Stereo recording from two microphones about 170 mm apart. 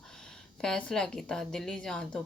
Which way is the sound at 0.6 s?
5° left (ahead or behind).